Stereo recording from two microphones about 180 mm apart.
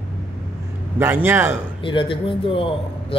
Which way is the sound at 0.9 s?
10° right (ahead or behind).